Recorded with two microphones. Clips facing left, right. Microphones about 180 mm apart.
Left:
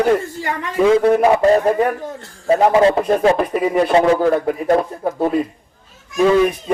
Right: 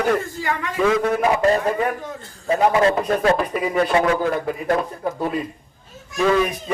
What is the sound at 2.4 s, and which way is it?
A man's voice, 30° left (ahead or behind).